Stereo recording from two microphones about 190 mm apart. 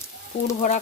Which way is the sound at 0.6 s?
40° left (ahead or behind).